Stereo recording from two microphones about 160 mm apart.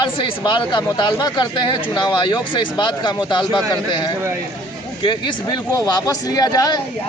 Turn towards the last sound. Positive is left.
turn(degrees=25)  # may be behind; listen again after turning